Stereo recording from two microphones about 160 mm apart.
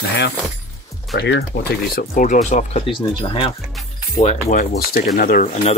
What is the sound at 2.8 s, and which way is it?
Speech, 30° left (ahead or behind).